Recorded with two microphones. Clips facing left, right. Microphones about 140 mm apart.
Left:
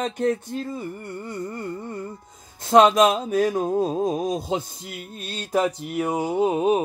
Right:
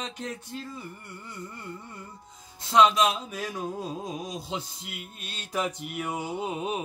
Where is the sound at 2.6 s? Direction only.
50° left (ahead or behind).